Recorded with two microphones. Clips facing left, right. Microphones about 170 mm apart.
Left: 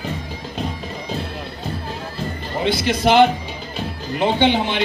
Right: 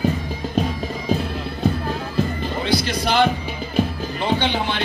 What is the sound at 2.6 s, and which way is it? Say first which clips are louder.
Music: left 4 dB; 20° left (ahead or behind).